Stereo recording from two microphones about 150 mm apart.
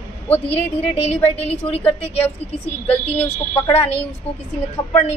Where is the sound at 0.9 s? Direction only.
45° left (ahead or behind).